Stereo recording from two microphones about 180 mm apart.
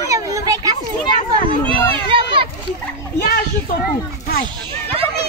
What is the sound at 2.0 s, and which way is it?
Speech, 30° right (ahead or behind).